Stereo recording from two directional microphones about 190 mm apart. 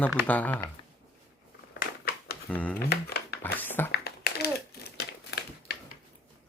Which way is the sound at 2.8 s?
55° left (ahead or behind).